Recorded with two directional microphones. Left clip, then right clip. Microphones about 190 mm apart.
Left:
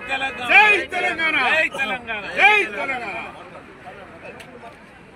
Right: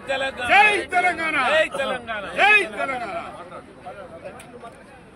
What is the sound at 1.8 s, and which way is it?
Speech, 25° right (ahead or behind).